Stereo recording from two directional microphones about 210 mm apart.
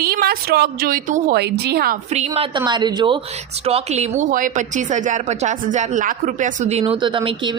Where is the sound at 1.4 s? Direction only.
50° right (ahead or behind).